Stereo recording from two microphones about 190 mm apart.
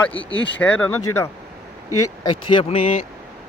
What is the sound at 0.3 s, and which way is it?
Speech, 75° left (ahead or behind).